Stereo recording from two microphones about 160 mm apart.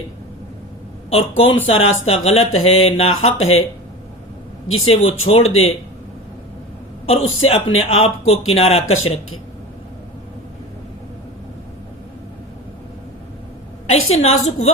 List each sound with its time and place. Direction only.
1.1 s speech: 35° left (ahead or behind)
4.9 s speech: 40° left (ahead or behind)
7.1 s speech: 40° left (ahead or behind)
13.9 s a woman's voice: 45° left (ahead or behind)